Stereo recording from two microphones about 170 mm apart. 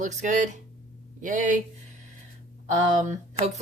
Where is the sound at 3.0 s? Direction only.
45° right (ahead or behind).